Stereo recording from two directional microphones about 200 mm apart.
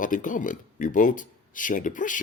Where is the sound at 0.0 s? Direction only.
40° left (ahead or behind).